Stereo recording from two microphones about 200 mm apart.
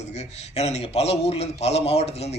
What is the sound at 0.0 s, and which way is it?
A man's voice, 35° left (ahead or behind).